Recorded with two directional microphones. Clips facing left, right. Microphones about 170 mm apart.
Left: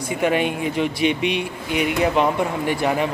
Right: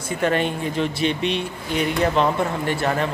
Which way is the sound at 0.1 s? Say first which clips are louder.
Left 1 dB; 10° left (ahead or behind).